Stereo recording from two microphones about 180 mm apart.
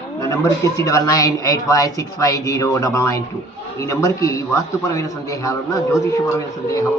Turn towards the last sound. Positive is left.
turn(degrees=15)  # may be behind; listen again after turning